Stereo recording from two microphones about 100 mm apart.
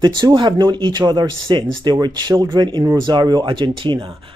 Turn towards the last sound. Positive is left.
turn(degrees=-50)  # may be behind; listen again after turning